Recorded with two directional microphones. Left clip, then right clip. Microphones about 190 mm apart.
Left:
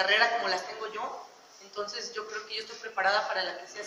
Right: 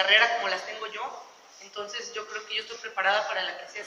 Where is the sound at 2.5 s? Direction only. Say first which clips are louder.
Right 4 dB; 50° left (ahead or behind).